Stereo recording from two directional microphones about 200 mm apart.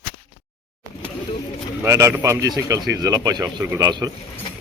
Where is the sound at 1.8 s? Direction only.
15° right (ahead or behind).